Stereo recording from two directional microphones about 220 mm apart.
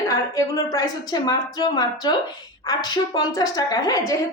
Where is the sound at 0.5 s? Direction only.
15° left (ahead or behind).